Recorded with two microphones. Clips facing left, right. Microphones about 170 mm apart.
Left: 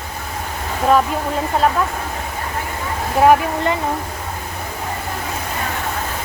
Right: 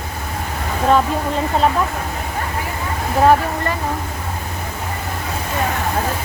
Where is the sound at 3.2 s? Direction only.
15° left (ahead or behind).